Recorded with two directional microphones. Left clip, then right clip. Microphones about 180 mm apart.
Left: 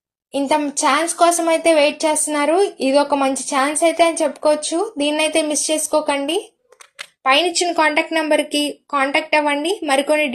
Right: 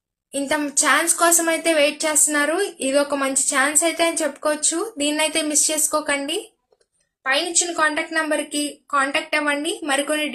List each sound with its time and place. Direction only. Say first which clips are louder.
0.3 s a woman's voice: left 4 dB; 15° left (ahead or behind)
7.3 s a woman's voice: left 6 dB; 25° left (ahead or behind)